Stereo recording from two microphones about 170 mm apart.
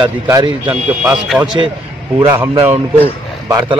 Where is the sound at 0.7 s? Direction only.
5° right (ahead or behind).